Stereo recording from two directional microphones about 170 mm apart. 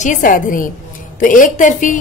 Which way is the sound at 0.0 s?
50° left (ahead or behind).